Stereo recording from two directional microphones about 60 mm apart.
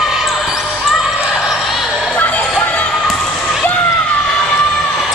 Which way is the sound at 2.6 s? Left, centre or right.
Left.